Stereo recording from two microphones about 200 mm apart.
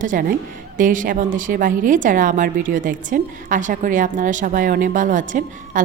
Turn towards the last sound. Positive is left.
turn(degrees=-40)  # may be behind; listen again after turning